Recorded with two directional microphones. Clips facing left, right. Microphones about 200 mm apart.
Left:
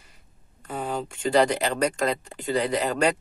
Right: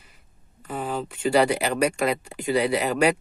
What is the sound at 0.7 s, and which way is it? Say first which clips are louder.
Speech: right 1 dB; centre (ahead or behind).